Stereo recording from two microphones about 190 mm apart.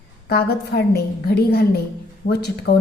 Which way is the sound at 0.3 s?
55° left (ahead or behind).